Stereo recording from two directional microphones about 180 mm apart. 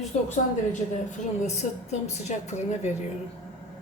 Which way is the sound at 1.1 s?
40° left (ahead or behind).